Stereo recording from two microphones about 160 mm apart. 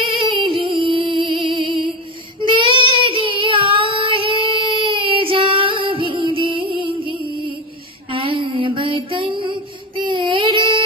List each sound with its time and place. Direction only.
0.0 s music: 30° right (ahead or behind)
2.4 s child singing: 30° right (ahead or behind)
8.1 s mantra: 30° right (ahead or behind)